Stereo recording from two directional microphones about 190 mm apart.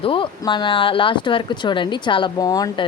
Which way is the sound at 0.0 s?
25° left (ahead or behind).